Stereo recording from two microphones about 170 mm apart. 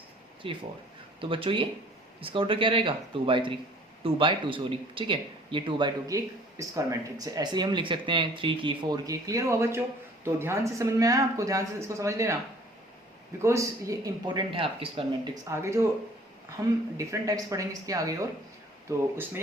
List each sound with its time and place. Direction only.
0.4 s speech: 30° right (ahead or behind)
13.4 s speech: 15° right (ahead or behind)
15.4 s speech: 15° right (ahead or behind)